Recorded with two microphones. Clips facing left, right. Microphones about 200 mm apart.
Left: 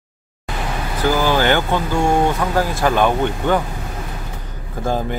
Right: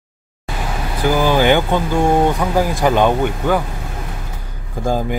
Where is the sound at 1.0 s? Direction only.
15° right (ahead or behind).